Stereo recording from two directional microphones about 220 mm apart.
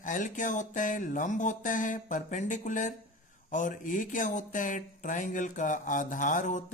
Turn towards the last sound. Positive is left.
turn(degrees=35)  # may be behind; listen again after turning